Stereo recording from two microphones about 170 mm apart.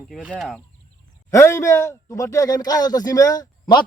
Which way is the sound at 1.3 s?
15° left (ahead or behind).